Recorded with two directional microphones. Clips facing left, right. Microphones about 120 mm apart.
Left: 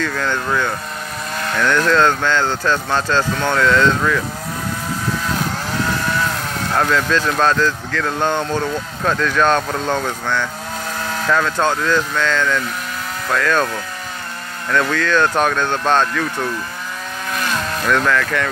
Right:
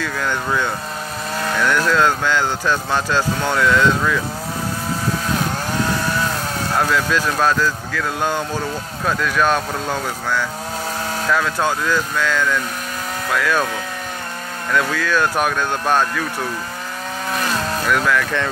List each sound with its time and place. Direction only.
0.0 s speech: 10° right (ahead or behind)
6.8 s speech: 10° right (ahead or behind)
14.7 s speech: 5° right (ahead or behind)
17.3 s chainsaw: 35° right (ahead or behind)
17.8 s speech: 5° right (ahead or behind)